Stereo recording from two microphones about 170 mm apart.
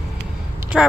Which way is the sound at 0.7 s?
Centre (ahead or behind).